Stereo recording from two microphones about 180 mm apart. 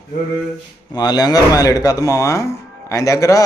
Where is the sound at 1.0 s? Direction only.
20° left (ahead or behind).